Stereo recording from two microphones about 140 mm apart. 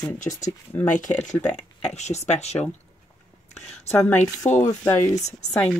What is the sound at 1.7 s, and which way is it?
Speech, 50° left (ahead or behind).